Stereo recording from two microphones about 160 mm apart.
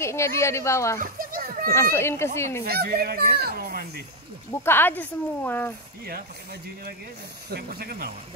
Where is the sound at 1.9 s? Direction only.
15° left (ahead or behind).